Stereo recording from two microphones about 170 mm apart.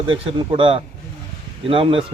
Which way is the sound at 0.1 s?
30° right (ahead or behind).